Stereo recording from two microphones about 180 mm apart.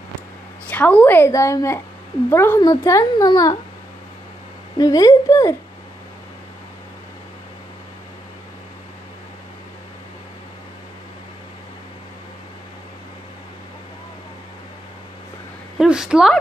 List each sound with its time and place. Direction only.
0.7 s speech: 10° left (ahead or behind)
4.7 s a woman's voice: 20° left (ahead or behind)
15.8 s a woman's voice: 5° right (ahead or behind)